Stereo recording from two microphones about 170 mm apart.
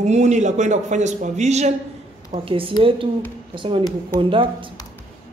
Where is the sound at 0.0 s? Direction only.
45° right (ahead or behind).